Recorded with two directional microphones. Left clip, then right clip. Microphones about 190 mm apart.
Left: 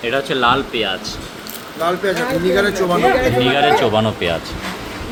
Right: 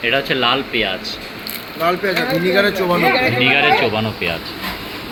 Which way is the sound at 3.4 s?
15° left (ahead or behind).